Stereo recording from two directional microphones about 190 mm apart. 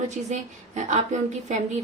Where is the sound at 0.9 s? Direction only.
35° right (ahead or behind).